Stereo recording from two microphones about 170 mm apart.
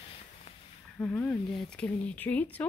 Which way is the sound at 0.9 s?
10° left (ahead or behind).